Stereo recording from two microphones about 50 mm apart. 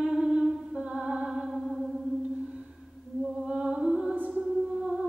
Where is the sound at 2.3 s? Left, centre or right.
Right.